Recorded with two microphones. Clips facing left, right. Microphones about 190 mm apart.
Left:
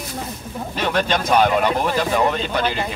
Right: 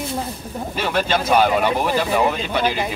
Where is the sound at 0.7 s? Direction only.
5° right (ahead or behind).